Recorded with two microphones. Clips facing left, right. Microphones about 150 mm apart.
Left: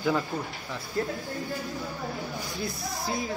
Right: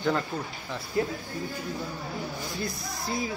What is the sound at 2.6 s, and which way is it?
Speech, centre (ahead or behind).